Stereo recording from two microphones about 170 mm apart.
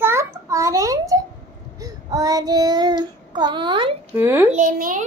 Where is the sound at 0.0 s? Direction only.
15° right (ahead or behind).